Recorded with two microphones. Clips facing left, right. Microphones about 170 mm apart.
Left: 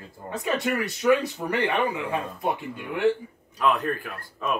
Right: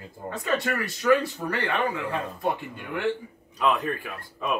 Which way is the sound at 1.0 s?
20° left (ahead or behind).